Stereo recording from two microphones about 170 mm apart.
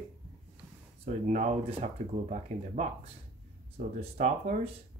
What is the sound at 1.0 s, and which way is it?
Speech, 40° right (ahead or behind).